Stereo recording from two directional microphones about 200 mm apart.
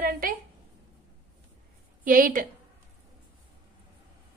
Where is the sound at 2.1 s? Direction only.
40° right (ahead or behind).